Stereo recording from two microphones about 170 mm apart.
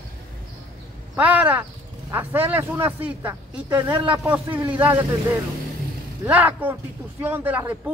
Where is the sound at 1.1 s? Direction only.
10° right (ahead or behind).